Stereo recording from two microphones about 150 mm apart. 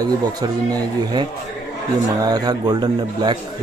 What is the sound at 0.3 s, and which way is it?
A man's voice, 25° right (ahead or behind).